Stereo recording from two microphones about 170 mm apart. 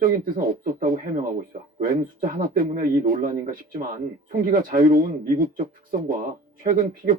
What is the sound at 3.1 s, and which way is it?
Speech, 55° right (ahead or behind).